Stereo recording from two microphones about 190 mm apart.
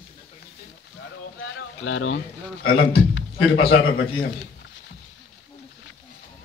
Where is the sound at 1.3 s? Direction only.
90° left.